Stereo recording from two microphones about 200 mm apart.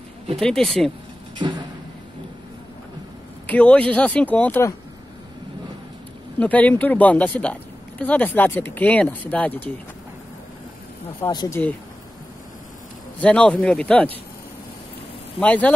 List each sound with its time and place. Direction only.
0.4 s speech: centre (ahead or behind)
1.4 s a sound: 25° right (ahead or behind)
3.4 s speech: 5° left (ahead or behind)
6.4 s speech: 10° left (ahead or behind)
11.1 s speech: 15° left (ahead or behind)
13.2 s speech: 5° left (ahead or behind)
15.3 s speech: 5° left (ahead or behind)